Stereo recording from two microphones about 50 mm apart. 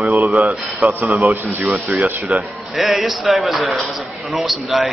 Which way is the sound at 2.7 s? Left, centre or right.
Centre.